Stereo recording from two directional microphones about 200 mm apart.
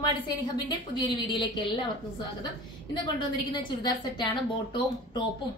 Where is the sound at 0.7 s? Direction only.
20° left (ahead or behind).